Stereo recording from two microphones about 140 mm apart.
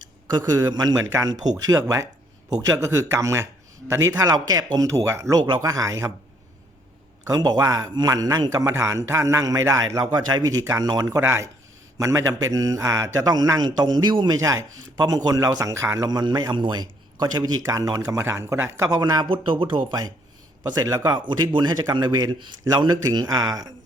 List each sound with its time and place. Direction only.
0.0 s speech: 30° right (ahead or behind)
7.3 s speech: 30° right (ahead or behind)